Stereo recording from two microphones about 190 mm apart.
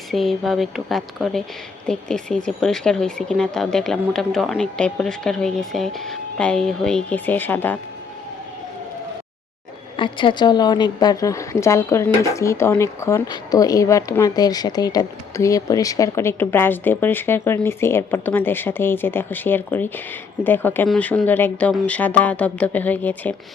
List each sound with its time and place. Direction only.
0.1 s speech: centre (ahead or behind)
10.0 s a woman's voice: 25° left (ahead or behind); by 23.3 s 10° left (ahead or behind)